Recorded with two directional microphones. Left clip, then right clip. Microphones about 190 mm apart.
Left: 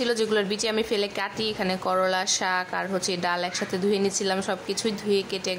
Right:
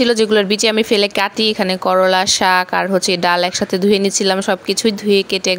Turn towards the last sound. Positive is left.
turn(degrees=-35)  # may be behind; listen again after turning